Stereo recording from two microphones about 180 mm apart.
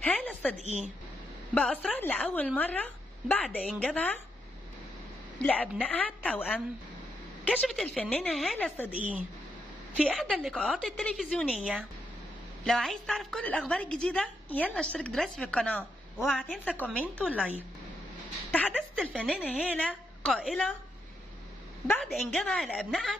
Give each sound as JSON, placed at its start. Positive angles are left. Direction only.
{"t": 0.0, "sound": "a sound", "side_deg": 10}
{"t": 0.6, "sound": "a woman's voice", "side_deg": -40}
{"t": 1.5, "sound": "a woman's voice", "side_deg": 5}
{"t": 5.4, "sound": "a woman's voice", "side_deg": 5}
{"t": 9.9, "sound": "a woman's voice", "side_deg": -5}
{"t": 18.7, "sound": "a woman's voice", "side_deg": -5}
{"t": 19.2, "sound": "a woman's voice", "side_deg": 5}
{"t": 21.8, "sound": "a woman's voice", "side_deg": 0}